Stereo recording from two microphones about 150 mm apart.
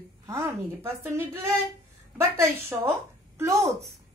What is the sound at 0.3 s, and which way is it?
A woman's voice, 20° right (ahead or behind).